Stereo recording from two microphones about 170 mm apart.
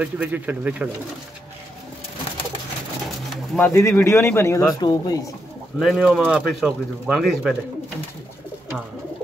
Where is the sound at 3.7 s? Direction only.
15° left (ahead or behind).